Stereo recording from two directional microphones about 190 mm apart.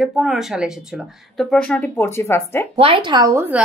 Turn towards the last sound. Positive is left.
turn(degrees=-15)  # may be behind; listen again after turning